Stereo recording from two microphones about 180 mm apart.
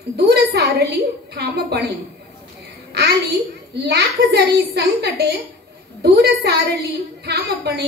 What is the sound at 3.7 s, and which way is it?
A woman's voice, 70° right (ahead or behind).